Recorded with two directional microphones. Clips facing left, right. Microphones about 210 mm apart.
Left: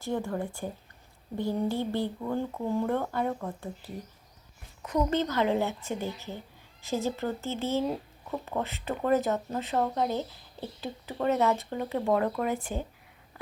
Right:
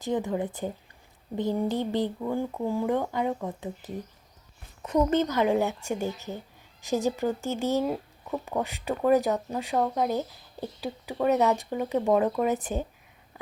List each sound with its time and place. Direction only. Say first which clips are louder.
0.0 s speech: right 3 dB; 20° right (ahead or behind)